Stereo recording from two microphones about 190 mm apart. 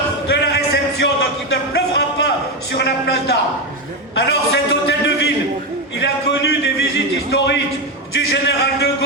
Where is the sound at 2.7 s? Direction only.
60° left (ahead or behind).